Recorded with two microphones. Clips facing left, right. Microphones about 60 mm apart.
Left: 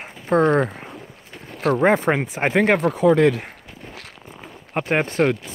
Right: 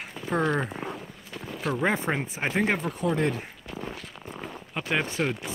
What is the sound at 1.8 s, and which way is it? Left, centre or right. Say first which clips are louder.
Speech: left 8 dB; left.